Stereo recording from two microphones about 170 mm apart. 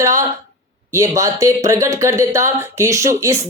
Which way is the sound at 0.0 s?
20° right (ahead or behind).